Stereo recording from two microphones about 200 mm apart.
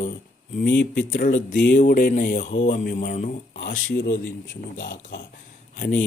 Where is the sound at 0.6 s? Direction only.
60° left (ahead or behind).